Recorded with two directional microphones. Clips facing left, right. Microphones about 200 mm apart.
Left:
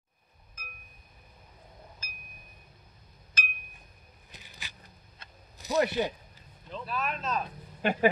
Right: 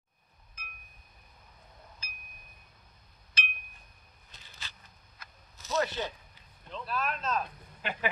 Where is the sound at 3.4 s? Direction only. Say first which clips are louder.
Even; 45° left (ahead or behind).